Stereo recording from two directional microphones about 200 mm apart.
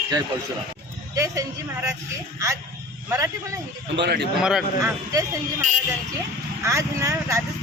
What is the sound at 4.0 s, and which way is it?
Speech, 55° right (ahead or behind).